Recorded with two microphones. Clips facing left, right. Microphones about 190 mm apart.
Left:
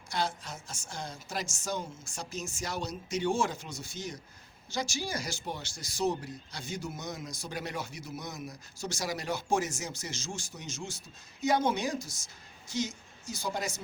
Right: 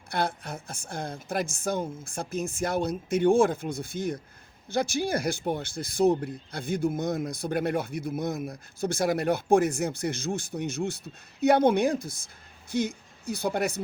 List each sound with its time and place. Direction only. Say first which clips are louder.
0.1 s speech: right 4 dB; 60° right (ahead or behind)